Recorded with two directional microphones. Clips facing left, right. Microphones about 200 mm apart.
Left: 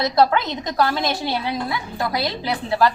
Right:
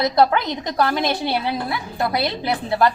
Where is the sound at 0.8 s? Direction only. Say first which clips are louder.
Right 1 dB; 25° right (ahead or behind).